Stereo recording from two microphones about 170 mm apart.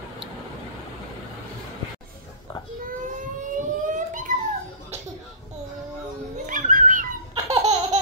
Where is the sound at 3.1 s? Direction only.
50° right (ahead or behind).